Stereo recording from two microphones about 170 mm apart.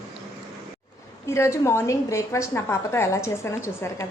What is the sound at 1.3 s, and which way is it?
A woman's voice, 15° left (ahead or behind).